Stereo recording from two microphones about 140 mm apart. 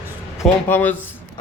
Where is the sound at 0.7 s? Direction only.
10° left (ahead or behind).